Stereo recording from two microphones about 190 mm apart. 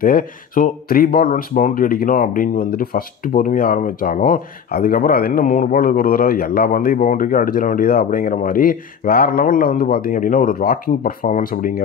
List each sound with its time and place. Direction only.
0.0 s speech: 50° left (ahead or behind)